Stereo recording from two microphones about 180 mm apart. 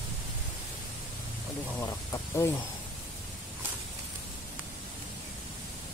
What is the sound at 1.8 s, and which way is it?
Speech, 15° left (ahead or behind).